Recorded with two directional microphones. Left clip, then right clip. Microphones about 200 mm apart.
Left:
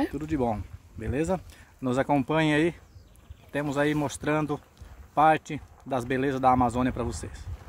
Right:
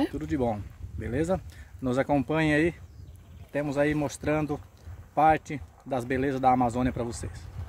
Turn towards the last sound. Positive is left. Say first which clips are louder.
# left 1 dB
turn(degrees=5)  # may be behind; listen again after turning